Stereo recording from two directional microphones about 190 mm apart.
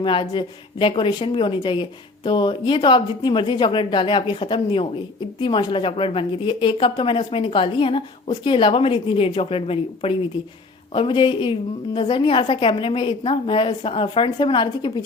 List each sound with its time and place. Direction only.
0.0 s a woman's voice: 25° left (ahead or behind)